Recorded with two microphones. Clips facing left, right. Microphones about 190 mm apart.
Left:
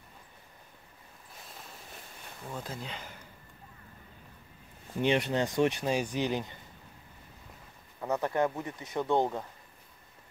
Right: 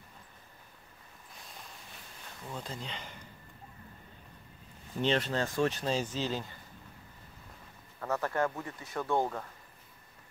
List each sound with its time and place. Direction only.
2.5 s speech: 5° left (ahead or behind)
5.0 s speech: 15° left (ahead or behind)
8.0 s speech: 15° left (ahead or behind)